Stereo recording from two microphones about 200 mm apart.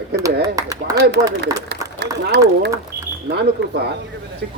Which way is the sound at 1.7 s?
60° right (ahead or behind).